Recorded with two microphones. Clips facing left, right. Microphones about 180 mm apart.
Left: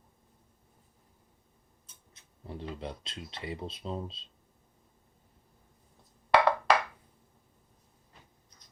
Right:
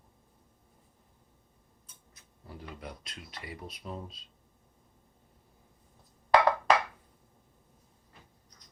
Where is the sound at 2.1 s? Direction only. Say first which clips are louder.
Left 6 dB; 25° left (ahead or behind).